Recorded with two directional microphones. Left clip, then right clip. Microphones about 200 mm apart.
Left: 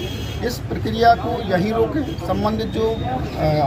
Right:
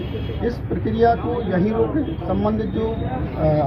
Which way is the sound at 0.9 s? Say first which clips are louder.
Left 3 dB; 20° left (ahead or behind).